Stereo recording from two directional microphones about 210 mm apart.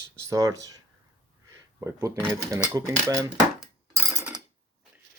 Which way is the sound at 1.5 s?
15° right (ahead or behind).